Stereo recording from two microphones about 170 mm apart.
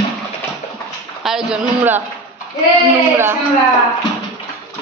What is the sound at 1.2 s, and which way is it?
Speech, 5° right (ahead or behind).